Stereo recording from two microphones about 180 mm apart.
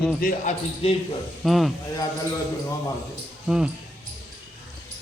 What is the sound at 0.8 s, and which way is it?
Speech, 35° left (ahead or behind).